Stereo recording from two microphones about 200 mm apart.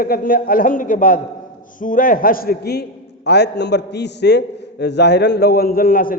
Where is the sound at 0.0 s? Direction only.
45° left (ahead or behind).